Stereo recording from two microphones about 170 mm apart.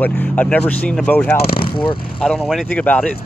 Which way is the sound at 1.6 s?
30° left (ahead or behind).